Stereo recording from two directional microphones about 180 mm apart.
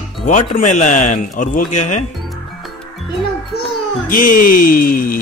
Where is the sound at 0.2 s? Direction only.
40° left (ahead or behind).